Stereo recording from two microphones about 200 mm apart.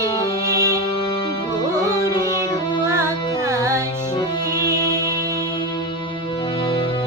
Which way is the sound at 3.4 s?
15° right (ahead or behind).